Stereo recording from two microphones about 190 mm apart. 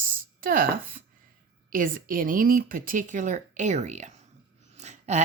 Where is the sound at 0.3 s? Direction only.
50° right (ahead or behind).